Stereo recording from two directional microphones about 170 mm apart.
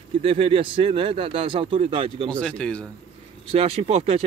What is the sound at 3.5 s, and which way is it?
Speech, 35° right (ahead or behind).